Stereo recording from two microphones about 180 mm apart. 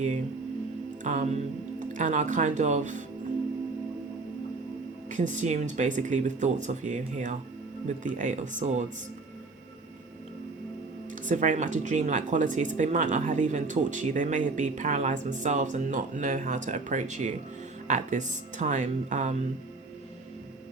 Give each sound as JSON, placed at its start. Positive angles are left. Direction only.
{"t": 1.0, "sound": "speech", "side_deg": -40}
{"t": 5.0, "sound": "speech", "side_deg": -45}
{"t": 11.1, "sound": "speech", "side_deg": -45}